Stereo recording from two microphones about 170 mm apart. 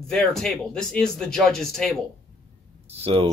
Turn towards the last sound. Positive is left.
turn(degrees=-35)  # may be behind; listen again after turning